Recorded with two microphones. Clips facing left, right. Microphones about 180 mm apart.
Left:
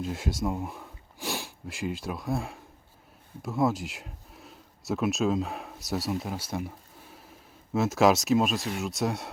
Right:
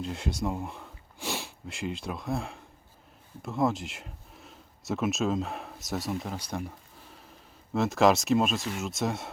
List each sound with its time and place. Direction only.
0.0 s speech: centre (ahead or behind)
7.7 s speech: centre (ahead or behind)